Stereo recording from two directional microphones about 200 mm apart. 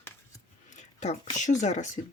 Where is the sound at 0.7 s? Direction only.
35° left (ahead or behind).